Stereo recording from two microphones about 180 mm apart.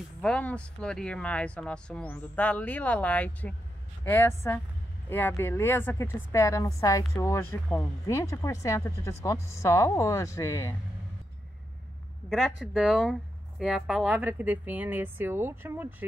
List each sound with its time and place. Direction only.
0.2 s a woman's voice: 5° left (ahead or behind)
12.3 s speech: centre (ahead or behind)